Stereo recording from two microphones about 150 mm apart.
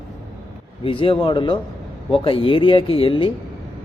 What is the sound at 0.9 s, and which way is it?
A man's voice, 35° left (ahead or behind).